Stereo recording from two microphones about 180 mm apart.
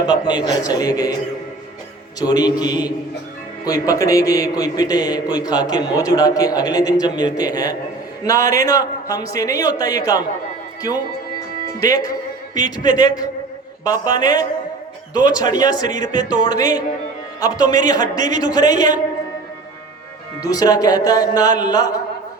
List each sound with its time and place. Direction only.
0.1 s a man's voice: 25° left (ahead or behind)
2.2 s a man's voice: 20° left (ahead or behind)
11.8 s a man's voice: 20° left (ahead or behind)
20.4 s a man's voice: 20° left (ahead or behind)